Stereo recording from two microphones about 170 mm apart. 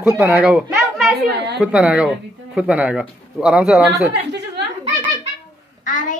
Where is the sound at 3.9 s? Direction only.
80° right.